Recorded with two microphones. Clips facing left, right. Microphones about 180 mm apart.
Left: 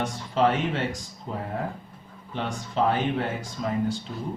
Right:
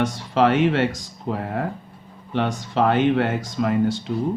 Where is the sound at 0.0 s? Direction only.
80° right.